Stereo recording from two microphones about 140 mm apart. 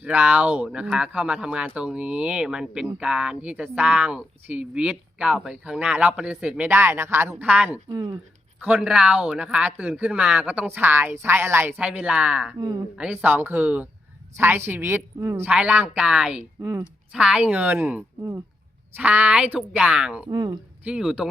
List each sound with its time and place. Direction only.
0.0 s speech: 10° right (ahead or behind)
7.9 s speech: 25° right (ahead or behind)
8.6 s speech: 5° right (ahead or behind)
15.4 s speech: 10° right (ahead or behind)
16.6 s speech: 20° right (ahead or behind)
17.1 s speech: 5° right (ahead or behind)
20.3 s speech: 30° right (ahead or behind)
20.8 s speech: 5° right (ahead or behind)